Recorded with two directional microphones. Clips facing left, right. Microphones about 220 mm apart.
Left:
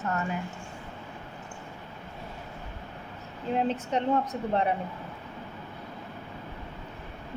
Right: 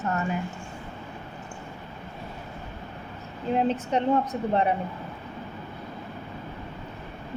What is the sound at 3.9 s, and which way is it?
Speech, 10° right (ahead or behind).